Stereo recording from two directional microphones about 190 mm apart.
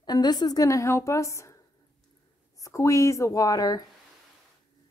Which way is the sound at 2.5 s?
15° left (ahead or behind).